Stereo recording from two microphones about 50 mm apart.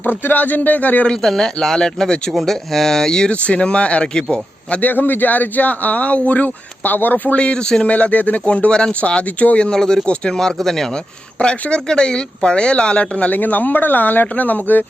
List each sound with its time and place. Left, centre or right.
0.0 s speech: left
1.0 s speech: centre
4.8 s speech: left
7.3 s speech: centre
7.9 s speech: left